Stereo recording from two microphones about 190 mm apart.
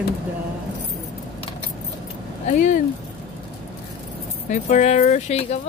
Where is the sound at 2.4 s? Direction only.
40° left (ahead or behind).